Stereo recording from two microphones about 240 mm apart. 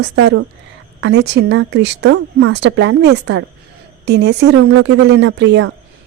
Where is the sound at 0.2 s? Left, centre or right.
Right.